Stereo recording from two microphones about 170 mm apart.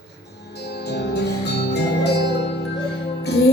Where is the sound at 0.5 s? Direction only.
75° left (ahead or behind).